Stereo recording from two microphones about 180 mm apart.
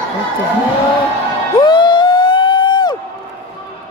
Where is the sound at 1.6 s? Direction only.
25° left (ahead or behind).